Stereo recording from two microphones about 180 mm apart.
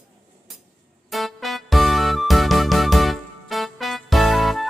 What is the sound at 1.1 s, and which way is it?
Music, centre (ahead or behind).